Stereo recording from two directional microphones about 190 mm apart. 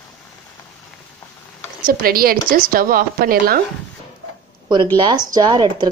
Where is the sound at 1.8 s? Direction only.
50° right (ahead or behind).